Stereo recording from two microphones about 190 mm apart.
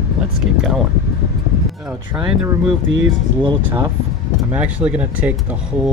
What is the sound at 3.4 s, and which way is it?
Speech, 25° right (ahead or behind).